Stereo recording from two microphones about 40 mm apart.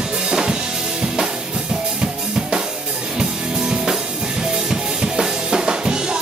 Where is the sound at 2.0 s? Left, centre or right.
Centre.